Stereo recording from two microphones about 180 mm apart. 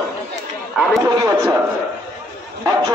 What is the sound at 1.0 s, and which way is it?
Speech, 20° right (ahead or behind).